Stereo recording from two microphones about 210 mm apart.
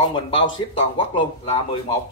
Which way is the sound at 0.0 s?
20° left (ahead or behind).